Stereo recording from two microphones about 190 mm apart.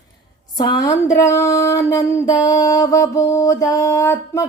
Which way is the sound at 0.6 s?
20° left (ahead or behind).